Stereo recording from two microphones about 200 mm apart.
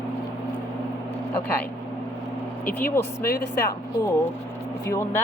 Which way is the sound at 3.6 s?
15° left (ahead or behind).